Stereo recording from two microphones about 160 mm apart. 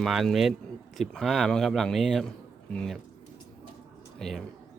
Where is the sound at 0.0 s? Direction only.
Centre (ahead or behind).